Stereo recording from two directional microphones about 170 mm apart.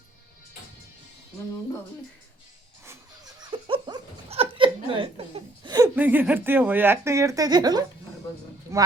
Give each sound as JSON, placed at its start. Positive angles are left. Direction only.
{"t": 3.5, "sound": "chuckle", "side_deg": -25}
{"t": 6.0, "sound": "speech", "side_deg": -10}